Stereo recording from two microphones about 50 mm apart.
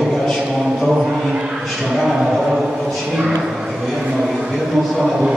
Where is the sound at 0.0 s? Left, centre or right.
Centre.